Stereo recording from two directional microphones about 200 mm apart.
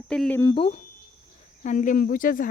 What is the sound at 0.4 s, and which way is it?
Speech, 25° left (ahead or behind).